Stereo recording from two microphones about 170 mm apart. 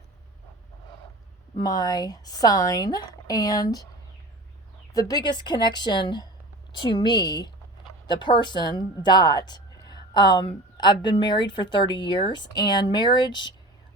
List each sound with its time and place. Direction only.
1.5 s a woman's voice: 20° left (ahead or behind)
4.9 s a woman's voice: 25° left (ahead or behind)